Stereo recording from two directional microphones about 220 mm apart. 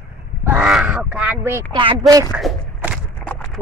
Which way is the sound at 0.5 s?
5° right (ahead or behind).